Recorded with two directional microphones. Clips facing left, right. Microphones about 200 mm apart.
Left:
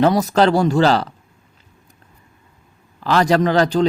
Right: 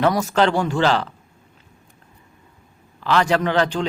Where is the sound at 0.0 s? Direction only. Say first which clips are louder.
Left 3 dB; 35° left (ahead or behind).